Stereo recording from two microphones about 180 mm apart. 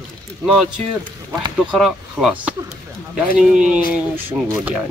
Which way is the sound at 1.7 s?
5° right (ahead or behind).